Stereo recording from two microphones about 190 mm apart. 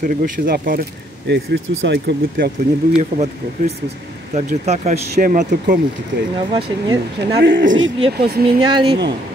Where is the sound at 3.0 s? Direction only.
35° right (ahead or behind).